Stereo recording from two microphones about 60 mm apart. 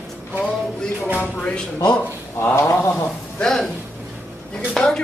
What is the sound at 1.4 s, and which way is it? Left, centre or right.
Speech, centre.